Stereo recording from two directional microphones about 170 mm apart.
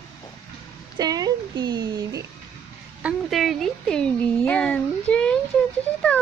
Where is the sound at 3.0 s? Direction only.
Centre (ahead or behind).